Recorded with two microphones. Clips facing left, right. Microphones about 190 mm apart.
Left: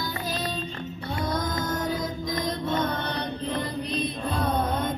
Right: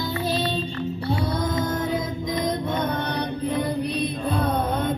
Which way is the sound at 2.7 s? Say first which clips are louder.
Right 2 dB; 15° right (ahead or behind).